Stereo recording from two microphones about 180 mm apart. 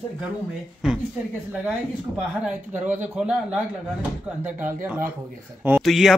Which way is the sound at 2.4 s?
10° right (ahead or behind).